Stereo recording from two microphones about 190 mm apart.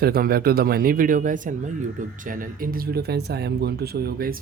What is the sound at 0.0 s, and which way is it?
Speech, 50° right (ahead or behind).